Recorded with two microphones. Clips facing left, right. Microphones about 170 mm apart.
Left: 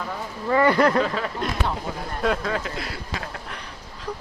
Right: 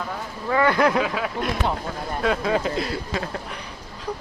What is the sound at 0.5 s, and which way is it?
Speech, 5° left (ahead or behind).